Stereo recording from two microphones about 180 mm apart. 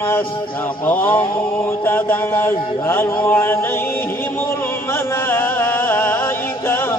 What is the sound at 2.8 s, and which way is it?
Music, 10° left (ahead or behind).